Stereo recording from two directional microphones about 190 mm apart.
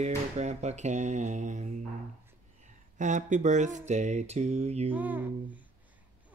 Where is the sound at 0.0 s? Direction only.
35° right (ahead or behind).